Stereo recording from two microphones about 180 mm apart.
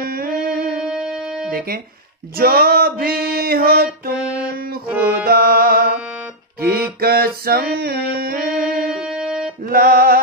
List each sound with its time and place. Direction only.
0.0 s music: 55° right (ahead or behind)
0.7 s music: 5° right (ahead or behind)
1.5 s speech: 55° right (ahead or behind)
2.3 s music: 55° right (ahead or behind)
4.8 s music: 10° right (ahead or behind)
5.2 s music: 55° right (ahead or behind)
7.0 s music: 60° right (ahead or behind)
8.6 s music: 5° right (ahead or behind)
9.7 s music: 55° right (ahead or behind)